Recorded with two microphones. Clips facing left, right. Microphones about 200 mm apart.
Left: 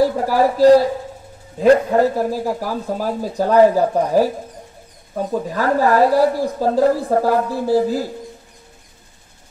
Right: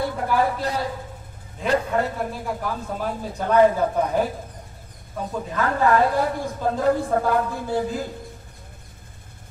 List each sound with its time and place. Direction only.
0.0 s a man's voice: 35° left (ahead or behind)
5.5 s a man's voice: 35° left (ahead or behind)